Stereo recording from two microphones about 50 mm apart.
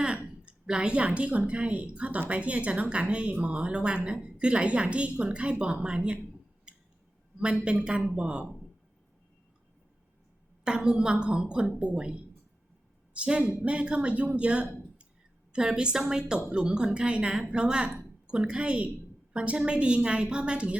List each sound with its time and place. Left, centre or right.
0.4 s a woman's voice: centre
7.3 s a woman's voice: right
10.6 s a woman's voice: centre